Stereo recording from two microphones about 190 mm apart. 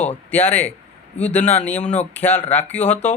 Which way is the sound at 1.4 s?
35° left (ahead or behind).